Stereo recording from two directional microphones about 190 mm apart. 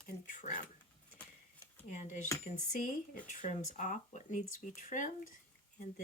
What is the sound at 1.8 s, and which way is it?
Speech, 40° left (ahead or behind).